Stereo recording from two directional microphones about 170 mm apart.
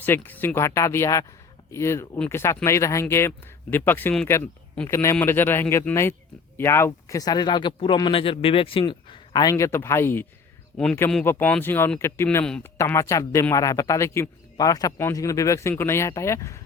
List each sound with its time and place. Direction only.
0.3 s speech: 10° left (ahead or behind)
10.7 s speech: centre (ahead or behind)
12.7 s speech: 15° left (ahead or behind)